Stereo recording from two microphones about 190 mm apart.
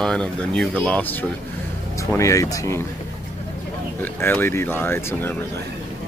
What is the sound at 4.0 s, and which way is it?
Speech, 10° left (ahead or behind).